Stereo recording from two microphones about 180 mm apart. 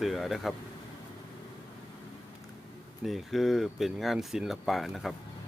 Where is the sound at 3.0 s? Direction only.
Centre (ahead or behind).